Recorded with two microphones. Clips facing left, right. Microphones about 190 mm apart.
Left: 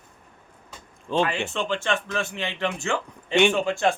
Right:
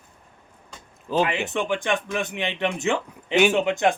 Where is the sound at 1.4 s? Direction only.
15° right (ahead or behind).